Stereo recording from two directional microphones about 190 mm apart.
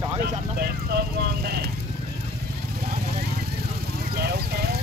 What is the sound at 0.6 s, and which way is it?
Clip-clop, 55° right (ahead or behind).